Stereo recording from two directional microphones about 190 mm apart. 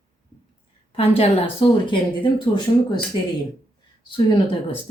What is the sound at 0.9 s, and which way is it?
A woman's voice, 30° left (ahead or behind).